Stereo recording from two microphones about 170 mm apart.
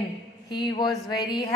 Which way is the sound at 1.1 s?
25° left (ahead or behind).